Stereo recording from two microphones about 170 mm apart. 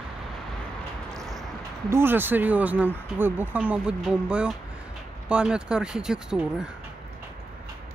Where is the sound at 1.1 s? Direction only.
20° right (ahead or behind); by 6.5 s 5° right (ahead or behind).